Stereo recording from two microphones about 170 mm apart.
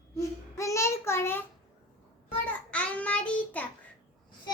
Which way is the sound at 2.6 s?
5° left (ahead or behind).